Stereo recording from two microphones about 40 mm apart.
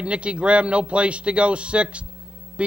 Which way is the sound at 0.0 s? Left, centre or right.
Right.